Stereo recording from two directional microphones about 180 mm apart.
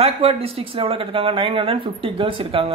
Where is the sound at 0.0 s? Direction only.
35° right (ahead or behind).